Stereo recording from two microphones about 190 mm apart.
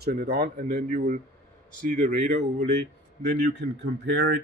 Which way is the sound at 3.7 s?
70° right (ahead or behind).